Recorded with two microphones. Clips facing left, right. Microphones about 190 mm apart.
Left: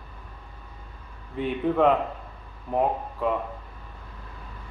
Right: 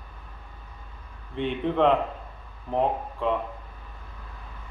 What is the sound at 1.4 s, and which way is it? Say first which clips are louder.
A man's voice: left 1 dB; 5° left (ahead or behind).